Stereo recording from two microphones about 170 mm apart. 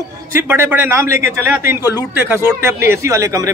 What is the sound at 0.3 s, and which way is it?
A man's voice, 15° right (ahead or behind).